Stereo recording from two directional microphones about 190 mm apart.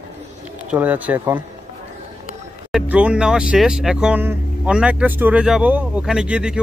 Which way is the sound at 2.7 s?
5° right (ahead or behind).